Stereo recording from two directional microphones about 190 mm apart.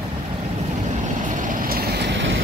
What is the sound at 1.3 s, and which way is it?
Vehicle, 45° right (ahead or behind).